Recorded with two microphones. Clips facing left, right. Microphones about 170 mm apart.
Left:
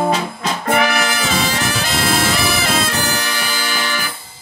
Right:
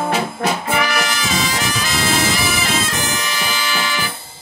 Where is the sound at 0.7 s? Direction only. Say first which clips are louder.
Left 3 dB; 55° left (ahead or behind).